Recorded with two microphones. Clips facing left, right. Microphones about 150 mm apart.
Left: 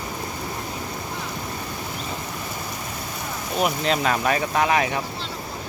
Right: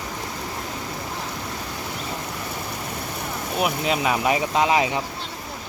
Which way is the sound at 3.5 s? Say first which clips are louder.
Left 1 dB; 10° right (ahead or behind).